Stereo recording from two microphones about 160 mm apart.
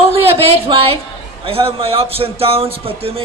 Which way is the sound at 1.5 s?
35° right (ahead or behind).